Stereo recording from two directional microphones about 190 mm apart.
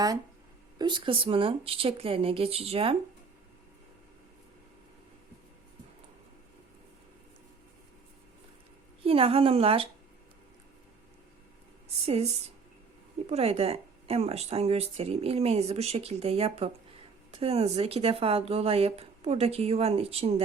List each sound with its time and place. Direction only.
0.8 s speech: 25° right (ahead or behind)
9.0 s a woman's voice: 30° right (ahead or behind)
12.0 s a woman's voice: 35° right (ahead or behind)